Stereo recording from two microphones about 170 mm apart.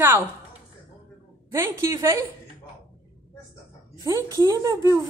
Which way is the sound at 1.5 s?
15° right (ahead or behind).